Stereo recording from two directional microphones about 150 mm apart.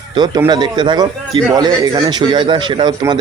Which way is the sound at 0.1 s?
30° right (ahead or behind).